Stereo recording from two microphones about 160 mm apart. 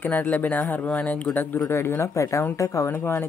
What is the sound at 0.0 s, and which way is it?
Speech, 10° left (ahead or behind).